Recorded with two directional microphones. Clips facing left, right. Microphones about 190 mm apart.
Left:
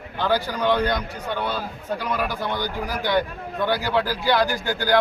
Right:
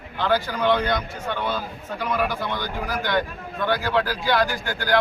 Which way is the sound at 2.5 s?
15° left (ahead or behind).